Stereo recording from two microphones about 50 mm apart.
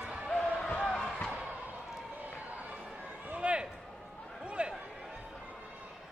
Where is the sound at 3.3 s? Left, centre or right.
Right.